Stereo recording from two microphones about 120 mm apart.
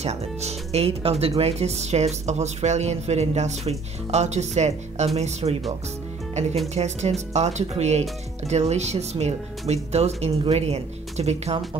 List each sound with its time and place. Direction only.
0.0 s speech: 65° right (ahead or behind)
6.7 s speech: 65° right (ahead or behind)